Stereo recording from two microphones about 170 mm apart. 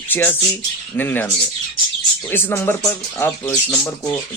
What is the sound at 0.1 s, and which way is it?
Speech, 10° left (ahead or behind).